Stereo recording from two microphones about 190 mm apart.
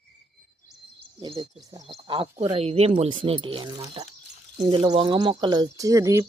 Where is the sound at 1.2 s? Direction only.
25° right (ahead or behind).